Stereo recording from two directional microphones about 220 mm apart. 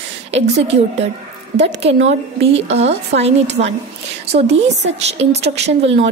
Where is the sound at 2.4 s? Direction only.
30° right (ahead or behind).